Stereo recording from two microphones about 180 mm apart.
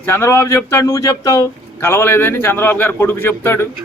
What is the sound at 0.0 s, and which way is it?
A man's voice, 15° left (ahead or behind).